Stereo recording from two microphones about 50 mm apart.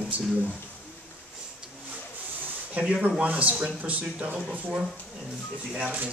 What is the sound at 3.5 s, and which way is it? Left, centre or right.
Speech, centre.